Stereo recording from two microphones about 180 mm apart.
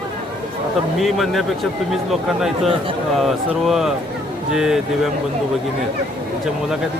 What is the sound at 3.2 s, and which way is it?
Speech, centre (ahead or behind).